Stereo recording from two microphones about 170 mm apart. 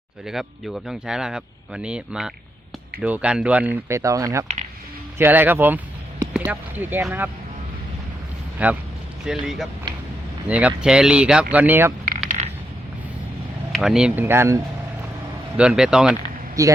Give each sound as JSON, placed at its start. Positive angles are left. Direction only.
{"t": 0.3, "sound": "speech", "side_deg": 0}
{"t": 8.6, "sound": "speech", "side_deg": -10}
{"t": 13.7, "sound": "speech", "side_deg": -5}
{"t": 15.5, "sound": "speech", "side_deg": -5}
{"t": 16.6, "sound": "a man's voice", "side_deg": -20}